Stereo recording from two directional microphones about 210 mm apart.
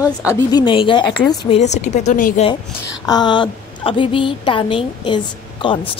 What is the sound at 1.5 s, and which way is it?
Speech, 35° left (ahead or behind).